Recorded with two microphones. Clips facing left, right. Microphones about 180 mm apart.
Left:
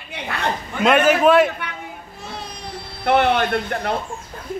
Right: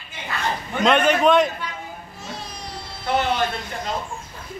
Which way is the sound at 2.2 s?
60° left (ahead or behind).